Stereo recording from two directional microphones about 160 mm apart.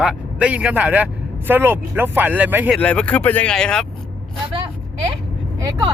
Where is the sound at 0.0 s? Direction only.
5° right (ahead or behind).